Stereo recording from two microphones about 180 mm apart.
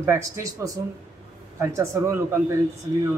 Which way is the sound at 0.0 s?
15° right (ahead or behind).